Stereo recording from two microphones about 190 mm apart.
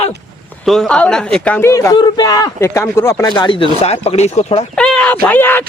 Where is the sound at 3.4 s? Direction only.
25° left (ahead or behind).